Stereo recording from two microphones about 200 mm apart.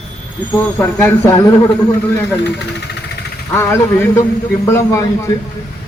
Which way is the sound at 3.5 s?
15° left (ahead or behind).